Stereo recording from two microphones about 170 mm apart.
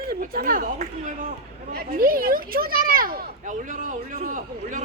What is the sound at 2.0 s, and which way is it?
A man's voice, 55° right (ahead or behind).